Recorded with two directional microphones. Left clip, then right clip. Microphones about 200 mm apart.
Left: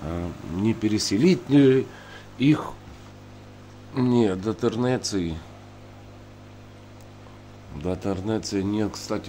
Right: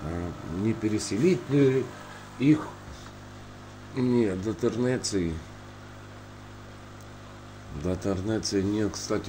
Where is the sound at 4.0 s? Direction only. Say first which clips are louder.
Left 4 dB; 25° left (ahead or behind).